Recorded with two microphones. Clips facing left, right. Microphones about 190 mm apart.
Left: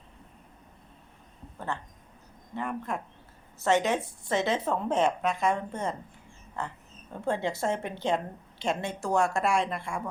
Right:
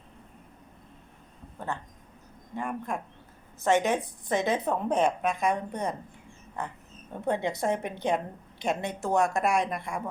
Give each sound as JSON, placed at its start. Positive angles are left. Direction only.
{"t": 1.5, "sound": "a woman's voice", "side_deg": -15}